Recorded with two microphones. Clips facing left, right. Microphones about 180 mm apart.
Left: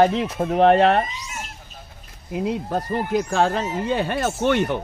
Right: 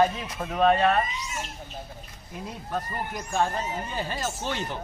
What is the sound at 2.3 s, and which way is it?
Speech, 80° left.